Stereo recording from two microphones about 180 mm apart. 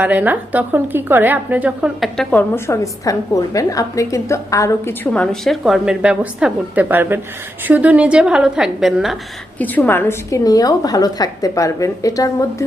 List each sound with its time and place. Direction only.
0.0 s a woman's voice: 10° right (ahead or behind)
2.6 s a woman's voice: 20° left (ahead or behind); by 9.1 s centre (ahead or behind)
9.6 s a woman's voice: 10° left (ahead or behind)